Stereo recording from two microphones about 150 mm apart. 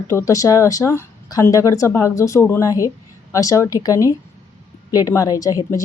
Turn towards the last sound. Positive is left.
turn(degrees=25)  # may be behind; listen again after turning